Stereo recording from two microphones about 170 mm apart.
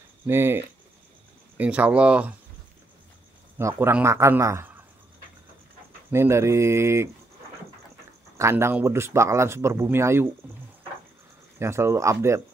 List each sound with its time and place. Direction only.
0.3 s speech: 15° right (ahead or behind)
3.5 s speech: 15° right (ahead or behind)
6.1 s speech: 15° right (ahead or behind)
8.4 s speech: 15° right (ahead or behind)
11.6 s speech: 15° right (ahead or behind)